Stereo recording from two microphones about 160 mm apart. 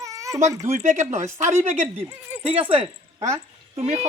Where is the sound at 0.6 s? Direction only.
50° right (ahead or behind).